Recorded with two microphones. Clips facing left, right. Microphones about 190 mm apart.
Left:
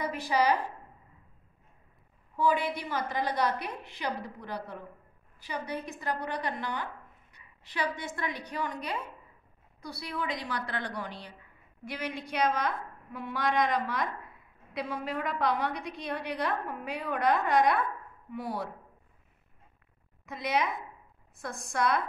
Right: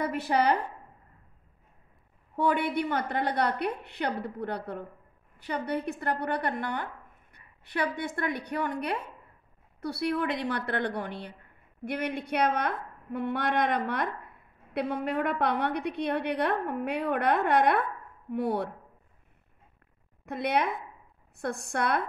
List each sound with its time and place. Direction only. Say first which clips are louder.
0.0 s a woman's voice: right 2 dB; 60° right (ahead or behind)
2.3 s a woman's voice: right 2 dB; 65° right (ahead or behind)
20.2 s a woman's voice: right 3 dB; 60° right (ahead or behind)